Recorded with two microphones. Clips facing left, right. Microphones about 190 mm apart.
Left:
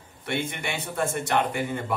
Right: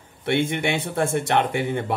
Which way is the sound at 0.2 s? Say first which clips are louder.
Right 8 dB; 55° right (ahead or behind).